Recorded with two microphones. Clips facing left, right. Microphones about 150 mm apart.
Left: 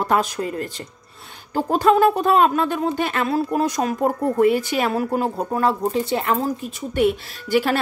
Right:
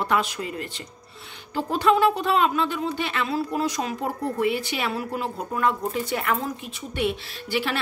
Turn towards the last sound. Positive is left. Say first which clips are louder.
# left 7 dB
turn(degrees=45)  # may be behind; listen again after turning